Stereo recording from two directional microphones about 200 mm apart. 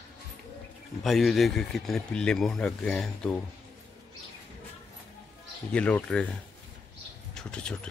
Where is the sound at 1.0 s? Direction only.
Centre (ahead or behind).